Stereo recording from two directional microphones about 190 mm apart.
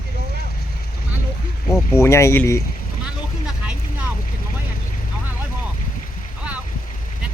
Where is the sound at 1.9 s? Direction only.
15° left (ahead or behind).